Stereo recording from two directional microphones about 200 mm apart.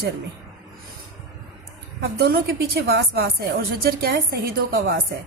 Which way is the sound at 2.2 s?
50° right (ahead or behind).